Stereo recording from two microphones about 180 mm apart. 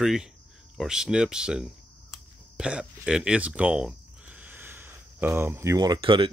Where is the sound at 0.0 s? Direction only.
5° right (ahead or behind).